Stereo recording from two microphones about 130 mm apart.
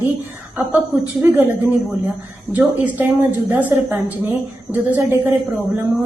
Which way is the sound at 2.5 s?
15° right (ahead or behind).